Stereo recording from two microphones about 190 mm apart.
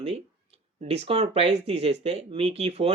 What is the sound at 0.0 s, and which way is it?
Speech, 35° right (ahead or behind).